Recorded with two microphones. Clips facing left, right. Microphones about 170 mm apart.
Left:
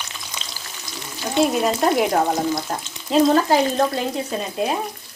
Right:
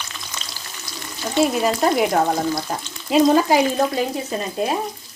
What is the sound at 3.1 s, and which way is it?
Frying, 10° right (ahead or behind).